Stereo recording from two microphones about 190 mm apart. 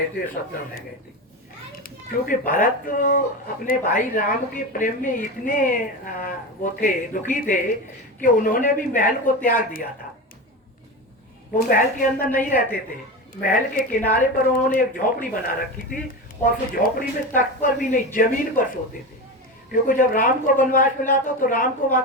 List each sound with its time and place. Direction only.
1.7 s a child's voice: 50° left (ahead or behind)
11.5 s a woman's voice: 45° left (ahead or behind)
19.7 s a woman's voice: 45° left (ahead or behind)